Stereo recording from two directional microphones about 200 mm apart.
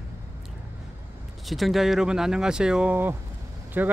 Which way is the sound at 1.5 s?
Centre (ahead or behind).